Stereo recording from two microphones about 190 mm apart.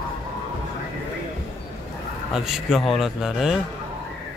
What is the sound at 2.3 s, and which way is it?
A man's voice, centre (ahead or behind).